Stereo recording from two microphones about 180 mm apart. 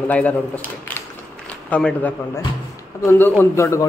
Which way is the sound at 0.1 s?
10° left (ahead or behind).